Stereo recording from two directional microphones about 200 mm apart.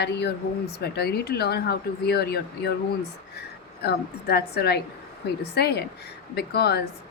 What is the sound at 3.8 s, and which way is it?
A woman's voice, 55° left (ahead or behind).